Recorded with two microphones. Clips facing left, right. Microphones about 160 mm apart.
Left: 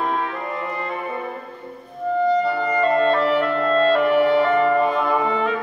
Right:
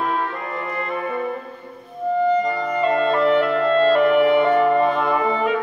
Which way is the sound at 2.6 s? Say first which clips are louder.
Left 1 dB; 10° right (ahead or behind).